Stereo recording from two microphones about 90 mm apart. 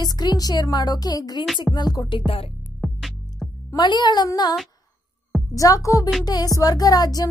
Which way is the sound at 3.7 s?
55° left (ahead or behind).